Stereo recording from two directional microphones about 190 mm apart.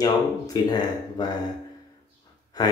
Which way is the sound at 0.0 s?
20° left (ahead or behind).